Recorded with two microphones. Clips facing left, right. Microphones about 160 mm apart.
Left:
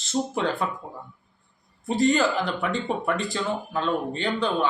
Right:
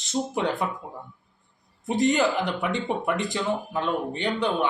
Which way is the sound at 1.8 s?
20° right (ahead or behind).